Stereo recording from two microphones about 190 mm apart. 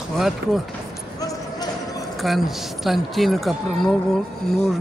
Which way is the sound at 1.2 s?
20° left (ahead or behind).